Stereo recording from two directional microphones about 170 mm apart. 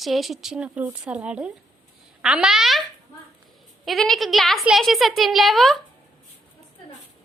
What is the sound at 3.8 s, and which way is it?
A woman's voice, centre (ahead or behind).